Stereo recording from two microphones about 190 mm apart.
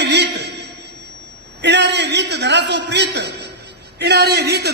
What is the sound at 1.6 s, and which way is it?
A man's voice, 65° right (ahead or behind).